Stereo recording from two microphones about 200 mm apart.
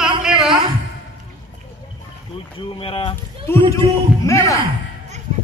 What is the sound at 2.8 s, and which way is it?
Speech, 25° left (ahead or behind).